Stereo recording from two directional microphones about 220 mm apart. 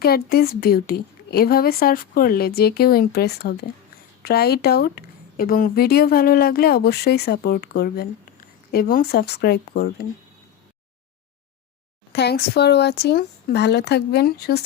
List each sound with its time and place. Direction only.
0.0 s speech: 45° left (ahead or behind)
12.1 s speech: 50° left (ahead or behind)